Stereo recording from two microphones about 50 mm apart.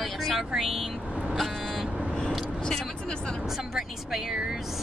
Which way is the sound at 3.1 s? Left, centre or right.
Centre.